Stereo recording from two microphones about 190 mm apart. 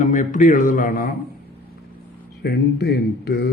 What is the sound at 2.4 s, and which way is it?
Speech, 55° left (ahead or behind).